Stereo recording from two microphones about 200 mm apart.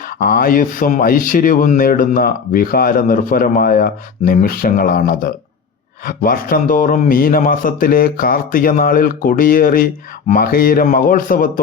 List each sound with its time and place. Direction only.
0.2 s speech: 45° left (ahead or behind)